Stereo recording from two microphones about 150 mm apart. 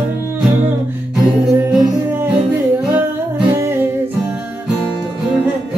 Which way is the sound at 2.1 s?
10° right (ahead or behind).